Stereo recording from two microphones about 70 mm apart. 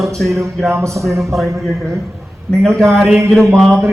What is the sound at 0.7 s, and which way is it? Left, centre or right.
Speech, right.